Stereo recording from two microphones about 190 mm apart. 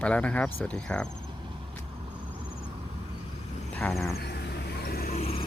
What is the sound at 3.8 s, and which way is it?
Speech, 15° left (ahead or behind).